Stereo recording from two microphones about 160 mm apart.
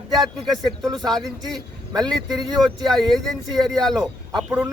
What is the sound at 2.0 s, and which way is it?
Speech, 25° right (ahead or behind).